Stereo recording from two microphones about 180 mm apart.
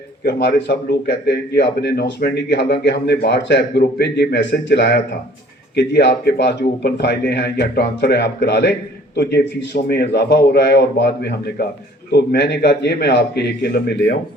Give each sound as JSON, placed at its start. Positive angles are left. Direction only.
{"t": 0.3, "sound": "a man's voice", "side_deg": 65}